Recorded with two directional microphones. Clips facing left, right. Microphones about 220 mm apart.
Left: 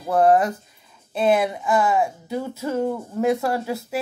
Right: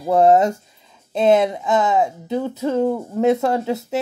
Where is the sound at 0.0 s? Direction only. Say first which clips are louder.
Right 3 dB; 25° right (ahead or behind).